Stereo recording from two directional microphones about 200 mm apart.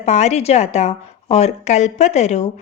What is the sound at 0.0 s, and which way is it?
A woman's voice, 35° left (ahead or behind).